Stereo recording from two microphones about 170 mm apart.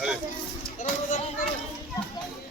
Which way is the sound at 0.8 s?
50° left (ahead or behind).